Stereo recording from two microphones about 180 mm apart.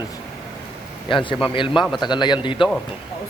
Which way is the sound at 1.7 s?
Centre (ahead or behind).